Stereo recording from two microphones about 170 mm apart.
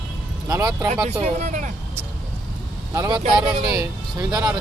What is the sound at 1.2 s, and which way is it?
Speech, 45° right (ahead or behind).